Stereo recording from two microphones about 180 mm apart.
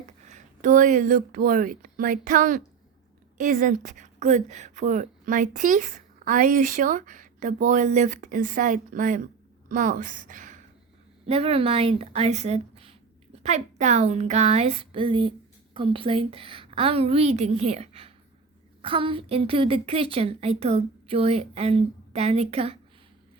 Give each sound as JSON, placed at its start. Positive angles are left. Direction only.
{"t": 0.0, "sound": "a woman's voice", "side_deg": -45}
{"t": 11.3, "sound": "speech", "side_deg": -35}